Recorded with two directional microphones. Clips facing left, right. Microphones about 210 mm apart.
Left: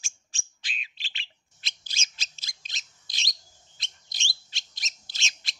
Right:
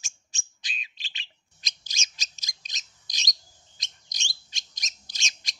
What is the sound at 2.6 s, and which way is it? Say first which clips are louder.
Bird: left 1 dB; 40° right (ahead or behind).